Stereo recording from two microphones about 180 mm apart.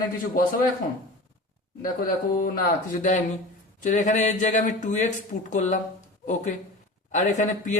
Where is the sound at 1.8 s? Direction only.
50° left (ahead or behind).